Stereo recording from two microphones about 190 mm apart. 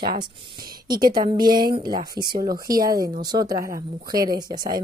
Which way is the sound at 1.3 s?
20° right (ahead or behind).